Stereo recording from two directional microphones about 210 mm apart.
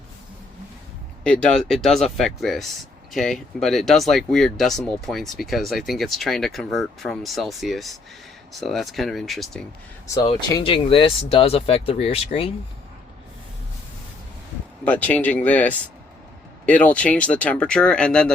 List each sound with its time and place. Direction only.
1.2 s speech: 5° left (ahead or behind)
10.5 s speech: 25° left (ahead or behind)
14.8 s speech: 5° left (ahead or behind)